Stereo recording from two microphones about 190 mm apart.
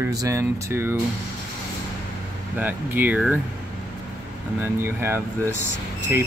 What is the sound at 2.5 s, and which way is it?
Speech, 10° right (ahead or behind).